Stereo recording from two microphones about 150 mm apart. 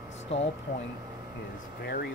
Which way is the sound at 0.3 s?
40° left (ahead or behind).